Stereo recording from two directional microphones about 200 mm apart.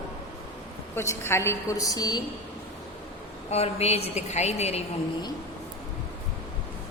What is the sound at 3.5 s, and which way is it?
A woman's voice, 30° left (ahead or behind).